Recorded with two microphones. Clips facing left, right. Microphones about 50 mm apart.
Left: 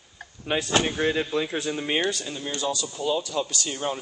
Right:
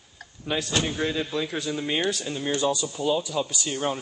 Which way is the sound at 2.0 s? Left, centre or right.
Centre.